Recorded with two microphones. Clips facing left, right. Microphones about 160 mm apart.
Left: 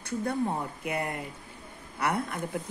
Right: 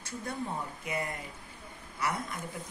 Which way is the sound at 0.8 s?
60° left (ahead or behind).